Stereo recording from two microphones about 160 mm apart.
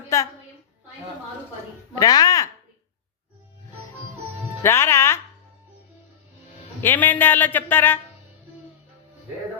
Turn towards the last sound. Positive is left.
turn(degrees=15)  # may be behind; listen again after turning